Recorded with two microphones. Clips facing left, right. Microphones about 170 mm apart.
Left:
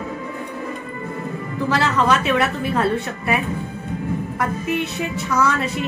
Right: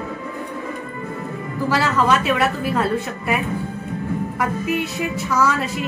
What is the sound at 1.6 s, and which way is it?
A woman's voice, 5° right (ahead or behind).